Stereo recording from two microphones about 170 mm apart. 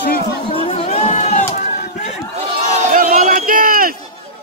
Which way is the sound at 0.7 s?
35° left (ahead or behind).